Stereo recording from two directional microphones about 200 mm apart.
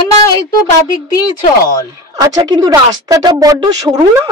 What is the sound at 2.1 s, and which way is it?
Speech, 20° right (ahead or behind).